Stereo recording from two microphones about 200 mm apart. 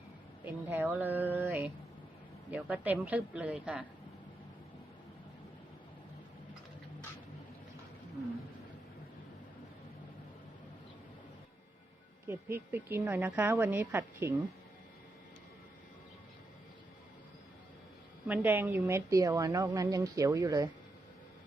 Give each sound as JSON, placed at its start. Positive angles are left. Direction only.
{"t": 0.4, "sound": "a woman's voice", "side_deg": -10}
{"t": 12.3, "sound": "a woman's voice", "side_deg": -10}
{"t": 18.3, "sound": "a woman's voice", "side_deg": -10}